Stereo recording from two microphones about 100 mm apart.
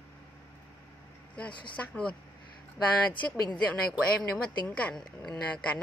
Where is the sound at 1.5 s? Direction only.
55° left (ahead or behind).